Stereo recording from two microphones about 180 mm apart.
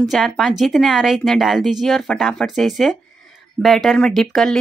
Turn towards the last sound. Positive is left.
turn(degrees=0)  # may be behind; listen again after turning